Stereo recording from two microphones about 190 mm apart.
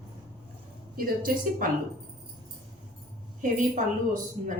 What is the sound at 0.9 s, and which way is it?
Speech, 50° right (ahead or behind).